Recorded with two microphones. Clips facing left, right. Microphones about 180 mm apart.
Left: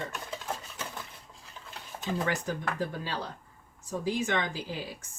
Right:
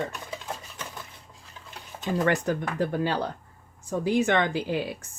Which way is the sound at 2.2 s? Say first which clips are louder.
Right 9 dB; 60° right (ahead or behind).